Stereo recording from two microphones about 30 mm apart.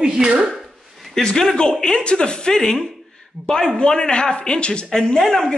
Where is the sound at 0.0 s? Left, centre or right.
Right.